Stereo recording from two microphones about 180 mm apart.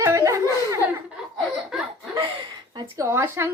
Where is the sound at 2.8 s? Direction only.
15° right (ahead or behind).